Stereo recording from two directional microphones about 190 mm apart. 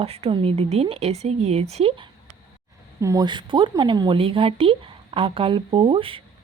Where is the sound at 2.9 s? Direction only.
15° right (ahead or behind).